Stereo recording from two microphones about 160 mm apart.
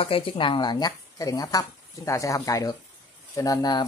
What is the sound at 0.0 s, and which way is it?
Speech, 35° left (ahead or behind).